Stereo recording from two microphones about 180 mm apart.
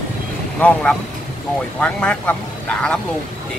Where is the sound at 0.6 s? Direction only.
5° left (ahead or behind).